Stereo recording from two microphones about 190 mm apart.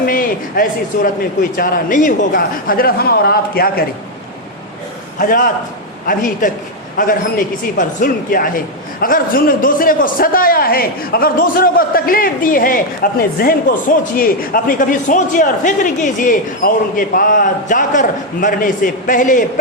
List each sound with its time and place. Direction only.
0.0 s a man's voice: 50° left (ahead or behind)
5.2 s a man's voice: 45° left (ahead or behind)
6.9 s a man's voice: 45° left (ahead or behind)